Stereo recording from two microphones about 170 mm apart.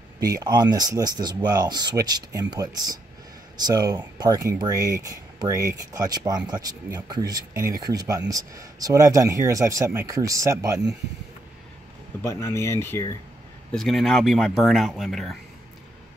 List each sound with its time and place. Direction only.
0.2 s speech: 20° right (ahead or behind)
12.2 s speech: 15° left (ahead or behind)
13.7 s speech: centre (ahead or behind)